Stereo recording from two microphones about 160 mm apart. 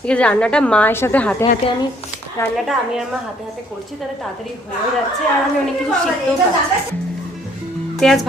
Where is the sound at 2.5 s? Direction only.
Centre (ahead or behind).